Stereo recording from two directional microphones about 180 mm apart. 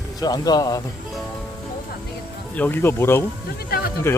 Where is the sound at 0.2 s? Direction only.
20° left (ahead or behind).